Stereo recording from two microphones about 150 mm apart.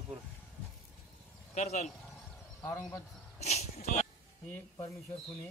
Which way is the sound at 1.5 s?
50° left (ahead or behind).